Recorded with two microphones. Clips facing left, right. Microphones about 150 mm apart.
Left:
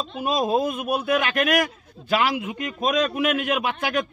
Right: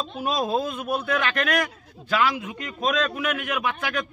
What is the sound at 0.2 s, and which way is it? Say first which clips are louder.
Speech: left 3 dB; 5° left (ahead or behind).